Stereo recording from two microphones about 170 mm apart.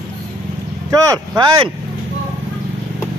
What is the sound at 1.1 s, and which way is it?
Speech, 25° right (ahead or behind).